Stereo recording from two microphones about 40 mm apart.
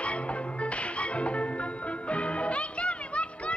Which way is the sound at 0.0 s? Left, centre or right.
Left.